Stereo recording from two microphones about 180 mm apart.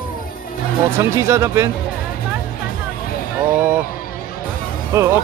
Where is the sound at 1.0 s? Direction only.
15° right (ahead or behind).